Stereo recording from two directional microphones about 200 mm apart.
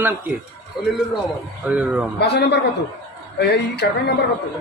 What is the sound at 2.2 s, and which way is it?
Speech, 55° left (ahead or behind).